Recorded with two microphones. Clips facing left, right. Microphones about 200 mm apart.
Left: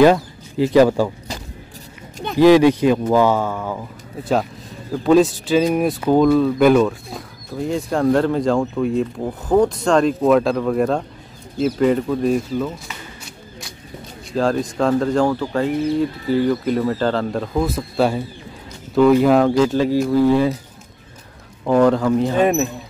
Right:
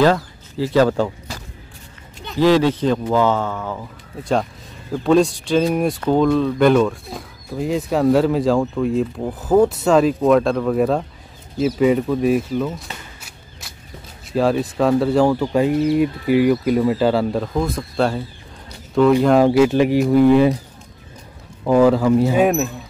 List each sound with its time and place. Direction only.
0.0 s speech: 15° left (ahead or behind)
2.3 s a man's voice: 15° left (ahead or behind); by 12.8 s centre (ahead or behind)
13.2 s a sound: 5° right (ahead or behind)
14.3 s speech: 5° right (ahead or behind)
19.4 s speech: 10° right (ahead or behind)
21.6 s speech: 5° right (ahead or behind)